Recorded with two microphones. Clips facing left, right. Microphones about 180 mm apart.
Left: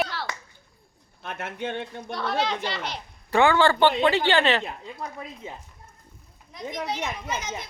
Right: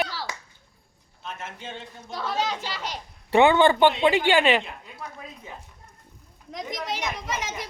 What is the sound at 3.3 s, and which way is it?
A woman's voice, 20° right (ahead or behind).